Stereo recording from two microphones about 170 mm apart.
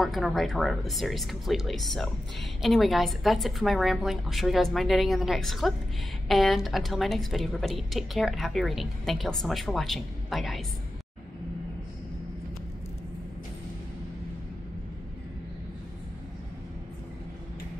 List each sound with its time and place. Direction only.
0.0 s a woman's voice: centre (ahead or behind)